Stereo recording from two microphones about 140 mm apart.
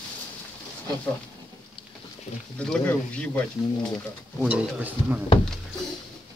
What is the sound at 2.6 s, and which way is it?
Speech, 10° left (ahead or behind).